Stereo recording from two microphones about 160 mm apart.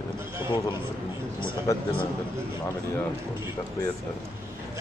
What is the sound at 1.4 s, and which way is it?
Speech, 30° left (ahead or behind).